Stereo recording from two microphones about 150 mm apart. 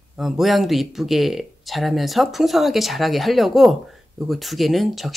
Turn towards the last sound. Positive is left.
turn(degrees=0)  # may be behind; listen again after turning